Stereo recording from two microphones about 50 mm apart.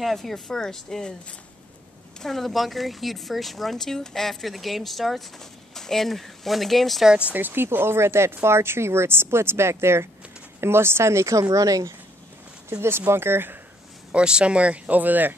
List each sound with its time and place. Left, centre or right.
0.0 s speech: centre
2.2 s speech: centre
7.1 s speech: right
7.3 s speech: right
12.6 s speech: right
14.1 s speech: right